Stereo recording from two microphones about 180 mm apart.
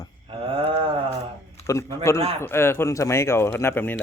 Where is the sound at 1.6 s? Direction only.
15° left (ahead or behind).